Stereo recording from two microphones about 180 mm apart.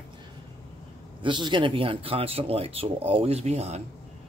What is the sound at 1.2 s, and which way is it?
Speech, 25° right (ahead or behind).